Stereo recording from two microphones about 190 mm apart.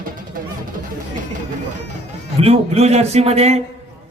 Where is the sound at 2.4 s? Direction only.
35° right (ahead or behind).